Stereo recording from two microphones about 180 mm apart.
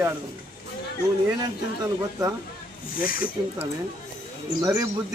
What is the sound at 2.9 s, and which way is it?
Speech, 50° left (ahead or behind).